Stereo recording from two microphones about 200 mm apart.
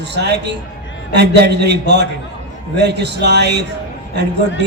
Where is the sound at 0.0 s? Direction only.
60° right (ahead or behind).